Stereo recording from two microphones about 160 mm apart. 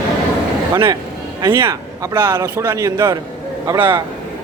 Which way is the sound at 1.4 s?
20° right (ahead or behind).